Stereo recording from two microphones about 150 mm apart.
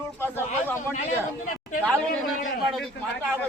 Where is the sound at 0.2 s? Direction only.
15° left (ahead or behind).